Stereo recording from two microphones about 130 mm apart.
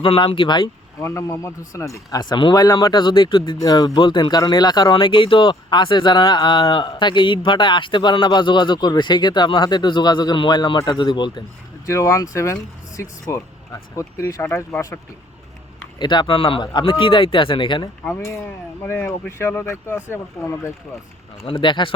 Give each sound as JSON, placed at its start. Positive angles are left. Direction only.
{"t": 0.0, "sound": "speech", "side_deg": 45}
{"t": 1.0, "sound": "a man's voice", "side_deg": 20}
{"t": 11.9, "sound": "a man's voice", "side_deg": 25}
{"t": 16.0, "sound": "speech", "side_deg": 35}
{"t": 18.8, "sound": "a man's voice", "side_deg": 15}
{"t": 21.4, "sound": "speech", "side_deg": 40}